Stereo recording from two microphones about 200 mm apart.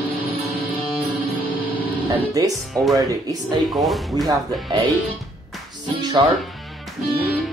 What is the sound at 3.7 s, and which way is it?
Speech, centre (ahead or behind).